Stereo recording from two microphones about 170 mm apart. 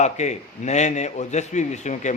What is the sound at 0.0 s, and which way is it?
A man's voice, 40° left (ahead or behind).